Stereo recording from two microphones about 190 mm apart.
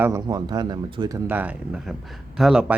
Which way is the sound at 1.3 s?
10° right (ahead or behind).